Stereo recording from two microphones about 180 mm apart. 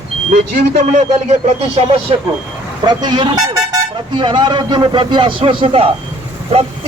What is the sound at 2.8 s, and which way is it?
A man's voice, 25° right (ahead or behind).